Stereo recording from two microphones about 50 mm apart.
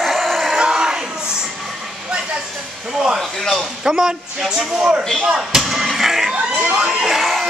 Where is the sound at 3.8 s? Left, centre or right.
Centre.